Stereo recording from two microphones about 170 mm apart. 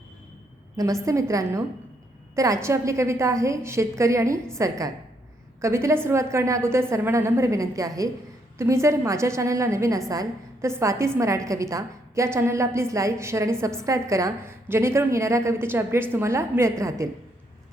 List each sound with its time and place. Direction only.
1.0 s a woman's voice: 20° right (ahead or behind)